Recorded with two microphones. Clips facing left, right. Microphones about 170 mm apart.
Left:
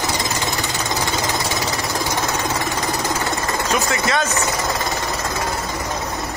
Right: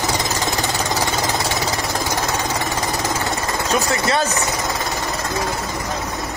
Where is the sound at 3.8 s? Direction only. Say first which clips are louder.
Right 1 dB; 35° right (ahead or behind).